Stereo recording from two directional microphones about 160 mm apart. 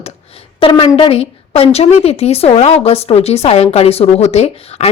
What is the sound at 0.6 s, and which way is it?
A woman's voice, 30° left (ahead or behind).